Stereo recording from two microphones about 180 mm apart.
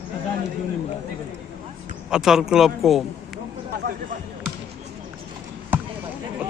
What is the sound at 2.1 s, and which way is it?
Speech, 5° right (ahead or behind).